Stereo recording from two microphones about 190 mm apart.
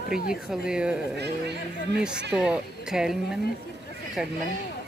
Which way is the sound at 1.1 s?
60° right (ahead or behind).